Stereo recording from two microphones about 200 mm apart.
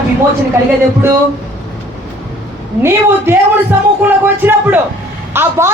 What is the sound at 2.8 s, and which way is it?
A man's voice, 10° right (ahead or behind).